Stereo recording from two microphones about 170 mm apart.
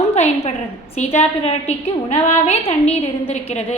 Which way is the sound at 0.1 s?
40° left (ahead or behind).